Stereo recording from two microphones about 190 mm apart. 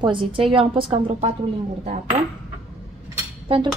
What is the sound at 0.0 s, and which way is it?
A woman's voice, 25° right (ahead or behind).